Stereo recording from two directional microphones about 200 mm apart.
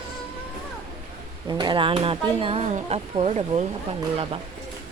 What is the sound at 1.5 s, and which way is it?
Speech, 20° right (ahead or behind).